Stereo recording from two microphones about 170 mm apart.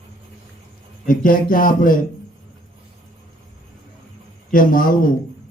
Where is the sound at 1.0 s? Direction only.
55° left (ahead or behind).